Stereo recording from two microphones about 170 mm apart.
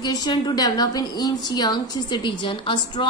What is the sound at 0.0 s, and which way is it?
A woman's voice, 25° left (ahead or behind).